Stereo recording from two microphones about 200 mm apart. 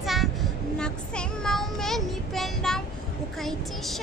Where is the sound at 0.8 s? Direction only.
5° left (ahead or behind).